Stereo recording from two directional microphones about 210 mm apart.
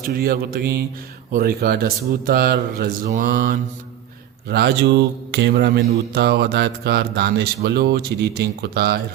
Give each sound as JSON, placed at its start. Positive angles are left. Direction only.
{"t": 0.0, "sound": "speech", "side_deg": -45}
{"t": 4.4, "sound": "speech", "side_deg": -50}